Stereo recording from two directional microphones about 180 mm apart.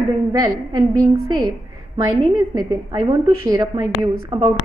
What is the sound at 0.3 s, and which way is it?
A woman's voice, 20° right (ahead or behind).